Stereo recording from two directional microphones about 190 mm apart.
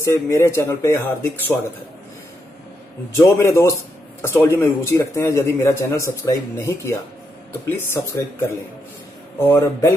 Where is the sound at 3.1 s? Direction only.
15° left (ahead or behind).